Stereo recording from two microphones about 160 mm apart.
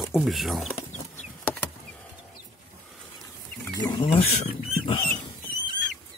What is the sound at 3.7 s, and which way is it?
Speech, 25° left (ahead or behind).